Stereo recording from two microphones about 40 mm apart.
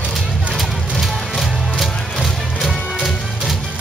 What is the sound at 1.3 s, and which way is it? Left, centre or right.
Music, centre.